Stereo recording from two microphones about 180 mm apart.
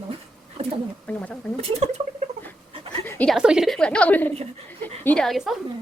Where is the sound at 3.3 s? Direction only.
5° right (ahead or behind).